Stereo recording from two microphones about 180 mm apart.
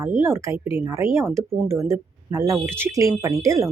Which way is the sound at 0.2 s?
15° right (ahead or behind).